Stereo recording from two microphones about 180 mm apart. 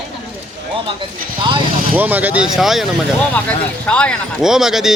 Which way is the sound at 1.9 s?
10° right (ahead or behind).